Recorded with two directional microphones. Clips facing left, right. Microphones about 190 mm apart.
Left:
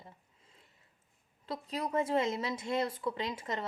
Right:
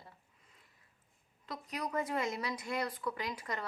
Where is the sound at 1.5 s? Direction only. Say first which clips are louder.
Left 4 dB; 30° left (ahead or behind).